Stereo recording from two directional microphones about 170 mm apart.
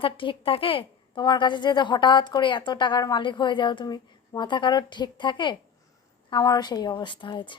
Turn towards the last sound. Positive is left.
turn(degrees=30)  # may be behind; listen again after turning